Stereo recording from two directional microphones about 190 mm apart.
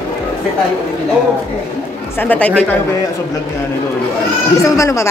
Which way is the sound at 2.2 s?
10° left (ahead or behind).